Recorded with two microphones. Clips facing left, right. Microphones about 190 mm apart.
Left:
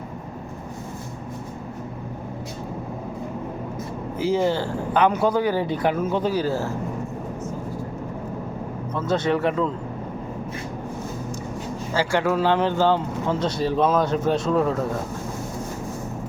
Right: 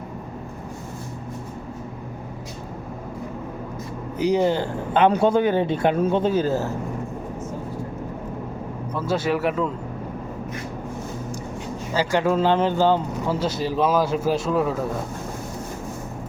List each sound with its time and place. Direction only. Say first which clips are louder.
4.2 s speech: right 2 dB; 20° right (ahead or behind)
9.0 s speech: left 1 dB; 5° right (ahead or behind)
11.9 s speech: right 1 dB; 15° right (ahead or behind)